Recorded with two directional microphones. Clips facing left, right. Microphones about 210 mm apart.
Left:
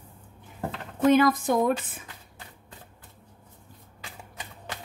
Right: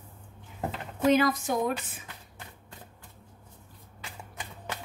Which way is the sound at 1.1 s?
55° left (ahead or behind).